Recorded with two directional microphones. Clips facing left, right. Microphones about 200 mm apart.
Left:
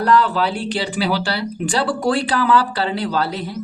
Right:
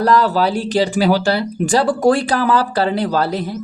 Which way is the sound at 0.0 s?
40° right (ahead or behind).